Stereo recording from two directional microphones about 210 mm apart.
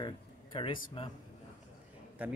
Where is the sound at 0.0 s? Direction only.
25° left (ahead or behind).